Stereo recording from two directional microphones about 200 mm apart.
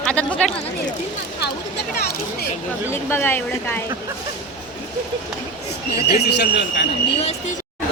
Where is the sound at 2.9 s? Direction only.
10° left (ahead or behind).